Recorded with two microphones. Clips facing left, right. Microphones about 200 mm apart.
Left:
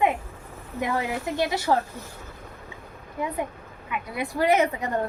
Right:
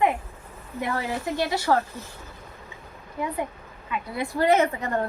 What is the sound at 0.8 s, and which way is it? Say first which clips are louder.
A woman's voice: left 1 dB; 20° left (ahead or behind).